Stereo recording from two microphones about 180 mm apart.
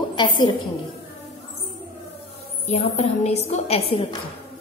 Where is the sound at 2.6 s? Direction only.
35° left (ahead or behind).